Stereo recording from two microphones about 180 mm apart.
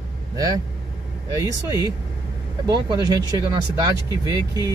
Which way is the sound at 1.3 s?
20° right (ahead or behind).